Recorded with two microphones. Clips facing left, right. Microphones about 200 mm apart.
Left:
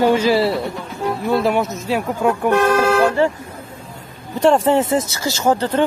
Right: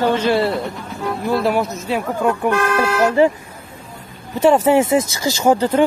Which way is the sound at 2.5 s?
40° left (ahead or behind).